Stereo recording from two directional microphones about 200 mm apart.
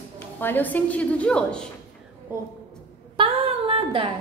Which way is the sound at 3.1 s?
25° right (ahead or behind).